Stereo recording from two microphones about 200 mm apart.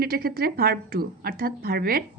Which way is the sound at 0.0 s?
50° right (ahead or behind).